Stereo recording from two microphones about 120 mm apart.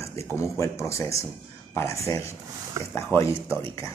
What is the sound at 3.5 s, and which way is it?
Speech, 45° right (ahead or behind).